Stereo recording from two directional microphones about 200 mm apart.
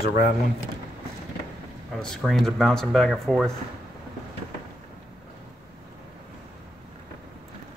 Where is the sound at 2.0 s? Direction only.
Centre (ahead or behind).